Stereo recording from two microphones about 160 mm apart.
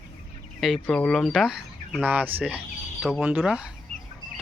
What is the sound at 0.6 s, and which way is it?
Speech, centre (ahead or behind).